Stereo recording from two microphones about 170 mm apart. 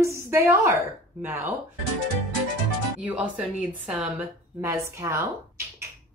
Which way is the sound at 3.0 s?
10° right (ahead or behind).